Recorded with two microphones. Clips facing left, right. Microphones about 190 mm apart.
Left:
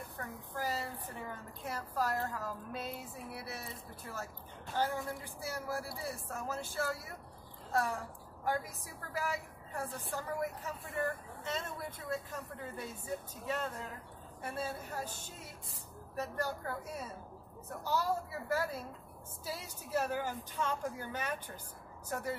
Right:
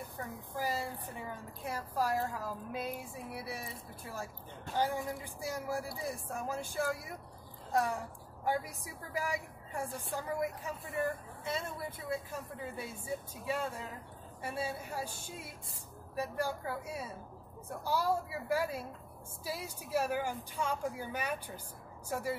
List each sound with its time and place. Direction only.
0.6 s a woman's voice: 10° right (ahead or behind)